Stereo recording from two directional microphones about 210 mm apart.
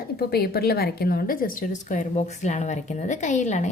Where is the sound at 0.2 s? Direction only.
50° left (ahead or behind).